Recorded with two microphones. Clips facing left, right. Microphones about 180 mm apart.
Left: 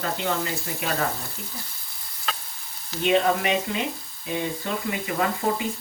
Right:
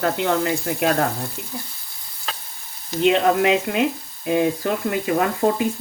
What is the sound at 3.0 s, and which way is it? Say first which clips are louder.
Speech: right 5 dB; 70° right (ahead or behind).